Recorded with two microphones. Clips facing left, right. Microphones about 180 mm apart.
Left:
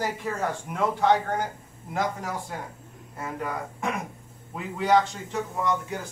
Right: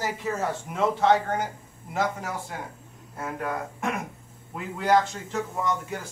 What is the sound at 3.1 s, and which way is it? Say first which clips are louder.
A man's voice: right 1 dB; centre (ahead or behind).